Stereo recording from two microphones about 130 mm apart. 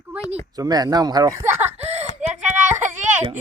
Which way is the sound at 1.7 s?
55° right (ahead or behind).